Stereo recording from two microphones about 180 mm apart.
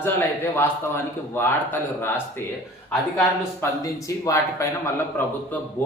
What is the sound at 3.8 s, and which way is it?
A man's voice, 15° left (ahead or behind).